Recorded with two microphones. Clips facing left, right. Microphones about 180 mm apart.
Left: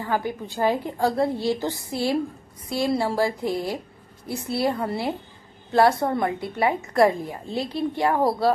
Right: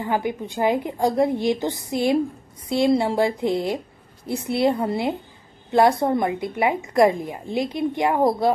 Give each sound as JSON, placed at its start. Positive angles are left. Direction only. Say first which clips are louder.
{"t": 0.0, "sound": "a woman's voice", "louder": "right 2 dB", "side_deg": -20}